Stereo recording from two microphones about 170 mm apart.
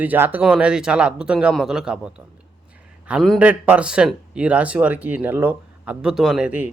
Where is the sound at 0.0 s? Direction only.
10° right (ahead or behind).